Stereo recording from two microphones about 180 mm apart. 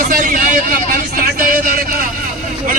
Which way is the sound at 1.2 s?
50° right (ahead or behind).